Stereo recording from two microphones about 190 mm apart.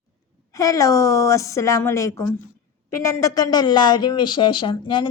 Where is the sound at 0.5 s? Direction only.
15° left (ahead or behind).